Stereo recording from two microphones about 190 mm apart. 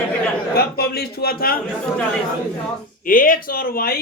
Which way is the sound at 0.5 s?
55° left (ahead or behind).